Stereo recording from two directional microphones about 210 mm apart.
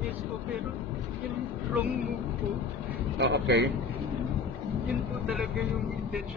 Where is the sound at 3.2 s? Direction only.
55° right (ahead or behind).